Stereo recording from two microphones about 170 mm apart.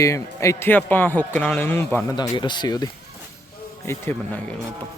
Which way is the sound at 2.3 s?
25° left (ahead or behind).